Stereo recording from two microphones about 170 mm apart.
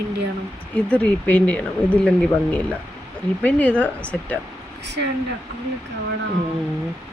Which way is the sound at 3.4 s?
10° left (ahead or behind).